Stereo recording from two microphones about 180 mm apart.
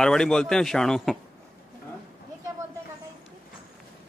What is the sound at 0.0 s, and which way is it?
Speech, 5° left (ahead or behind).